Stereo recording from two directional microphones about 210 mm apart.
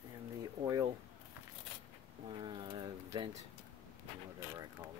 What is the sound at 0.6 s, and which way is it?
Speech, 15° right (ahead or behind).